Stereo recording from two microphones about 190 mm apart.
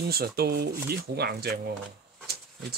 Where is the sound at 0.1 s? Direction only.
55° right (ahead or behind).